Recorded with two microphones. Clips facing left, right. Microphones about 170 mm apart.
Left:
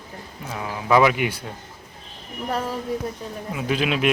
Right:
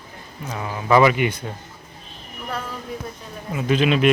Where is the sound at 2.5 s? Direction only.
40° left (ahead or behind).